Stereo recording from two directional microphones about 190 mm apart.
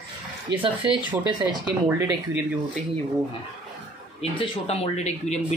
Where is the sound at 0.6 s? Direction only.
25° right (ahead or behind).